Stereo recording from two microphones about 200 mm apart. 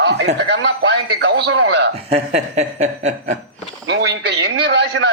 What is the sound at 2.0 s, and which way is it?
Speech, 35° right (ahead or behind).